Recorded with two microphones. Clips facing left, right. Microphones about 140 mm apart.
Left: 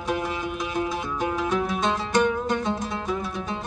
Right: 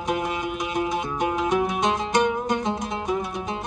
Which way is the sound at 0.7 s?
15° right (ahead or behind).